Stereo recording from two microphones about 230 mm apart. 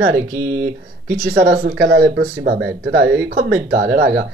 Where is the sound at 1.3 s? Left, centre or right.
Right.